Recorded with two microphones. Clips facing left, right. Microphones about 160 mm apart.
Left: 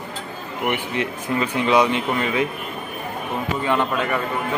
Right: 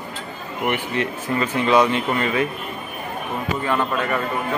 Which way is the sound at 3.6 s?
15° left (ahead or behind).